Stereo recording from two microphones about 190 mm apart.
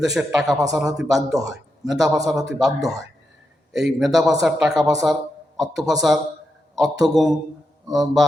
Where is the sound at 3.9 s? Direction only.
Centre (ahead or behind).